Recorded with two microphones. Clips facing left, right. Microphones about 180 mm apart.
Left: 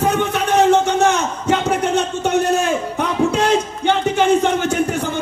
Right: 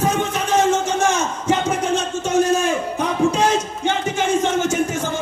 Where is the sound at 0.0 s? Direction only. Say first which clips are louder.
Left 2 dB; 65° left (ahead or behind).